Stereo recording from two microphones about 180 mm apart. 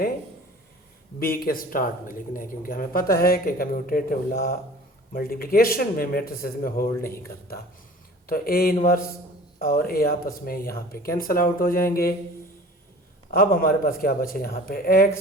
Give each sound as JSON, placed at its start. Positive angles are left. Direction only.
{"t": 1.2, "sound": "speech", "side_deg": 55}
{"t": 8.3, "sound": "speech", "side_deg": 55}
{"t": 13.3, "sound": "speech", "side_deg": 55}